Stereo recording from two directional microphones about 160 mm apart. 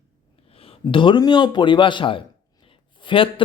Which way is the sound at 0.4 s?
35° left (ahead or behind).